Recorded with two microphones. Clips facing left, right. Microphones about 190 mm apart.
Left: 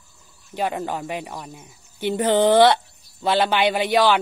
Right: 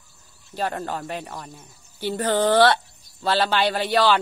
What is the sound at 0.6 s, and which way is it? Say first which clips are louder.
Speech: left 2 dB; 15° left (ahead or behind).